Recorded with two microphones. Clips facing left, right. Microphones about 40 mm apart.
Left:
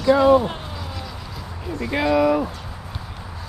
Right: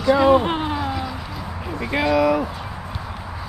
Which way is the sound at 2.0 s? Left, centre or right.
Right.